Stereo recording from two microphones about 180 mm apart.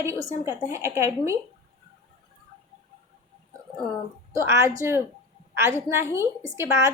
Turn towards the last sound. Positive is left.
turn(degrees=-15)  # may be behind; listen again after turning